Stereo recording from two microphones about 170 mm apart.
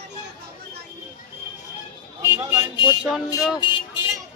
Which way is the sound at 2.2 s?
15° right (ahead or behind).